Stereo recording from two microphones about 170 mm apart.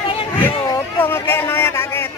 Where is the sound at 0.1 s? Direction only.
30° left (ahead or behind).